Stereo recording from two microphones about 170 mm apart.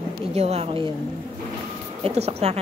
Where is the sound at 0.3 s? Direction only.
40° right (ahead or behind).